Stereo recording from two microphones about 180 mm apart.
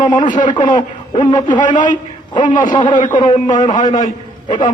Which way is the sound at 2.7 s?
25° left (ahead or behind).